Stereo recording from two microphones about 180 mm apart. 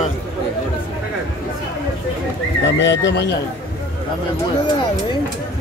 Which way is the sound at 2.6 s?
80° left.